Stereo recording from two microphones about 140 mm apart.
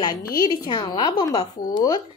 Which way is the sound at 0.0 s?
30° left (ahead or behind).